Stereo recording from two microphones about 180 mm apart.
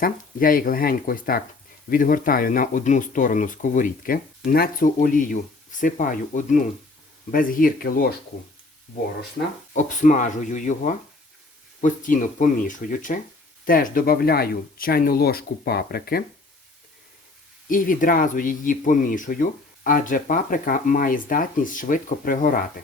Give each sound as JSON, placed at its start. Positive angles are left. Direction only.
{"t": 0.0, "sound": "speech", "side_deg": 50}
{"t": 9.7, "sound": "speech", "side_deg": 45}
{"t": 17.7, "sound": "speech", "side_deg": 50}